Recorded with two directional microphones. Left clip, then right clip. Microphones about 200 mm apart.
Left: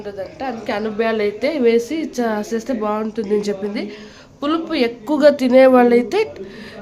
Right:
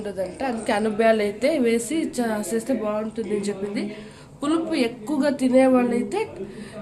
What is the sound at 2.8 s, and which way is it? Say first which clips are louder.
Speech: left 5 dB; 35° left (ahead or behind).